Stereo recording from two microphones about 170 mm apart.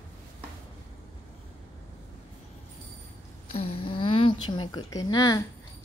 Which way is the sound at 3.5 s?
35° left (ahead or behind).